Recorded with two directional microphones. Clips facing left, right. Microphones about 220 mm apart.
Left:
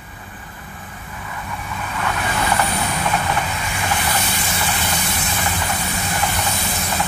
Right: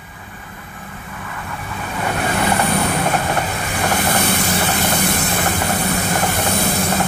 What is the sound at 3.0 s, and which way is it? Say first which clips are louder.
Vehicle: right 3 dB; 55° right (ahead or behind).